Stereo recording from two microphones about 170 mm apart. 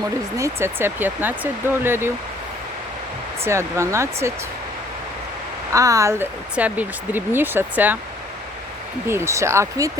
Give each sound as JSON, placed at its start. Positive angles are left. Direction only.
{"t": 0.3, "sound": "speech", "side_deg": -15}
{"t": 3.4, "sound": "speech", "side_deg": -15}
{"t": 5.7, "sound": "speech", "side_deg": -20}
{"t": 9.0, "sound": "speech", "side_deg": -15}